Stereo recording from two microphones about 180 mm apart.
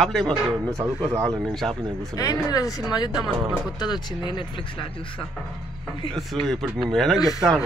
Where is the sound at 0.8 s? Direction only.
10° right (ahead or behind).